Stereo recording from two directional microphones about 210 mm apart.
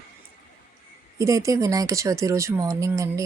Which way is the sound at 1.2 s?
15° right (ahead or behind).